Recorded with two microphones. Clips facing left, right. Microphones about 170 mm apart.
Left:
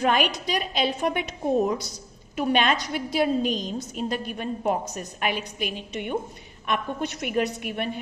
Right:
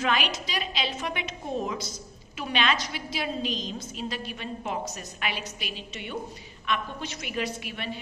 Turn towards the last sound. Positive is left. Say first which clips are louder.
# left 5 dB
turn(degrees=55)  # may be behind; listen again after turning